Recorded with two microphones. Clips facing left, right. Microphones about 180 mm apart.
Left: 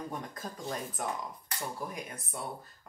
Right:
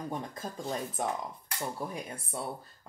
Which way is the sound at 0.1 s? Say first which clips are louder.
Right 3 dB; 25° right (ahead or behind).